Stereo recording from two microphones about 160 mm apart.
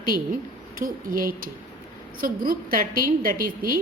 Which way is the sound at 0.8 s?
65° right (ahead or behind).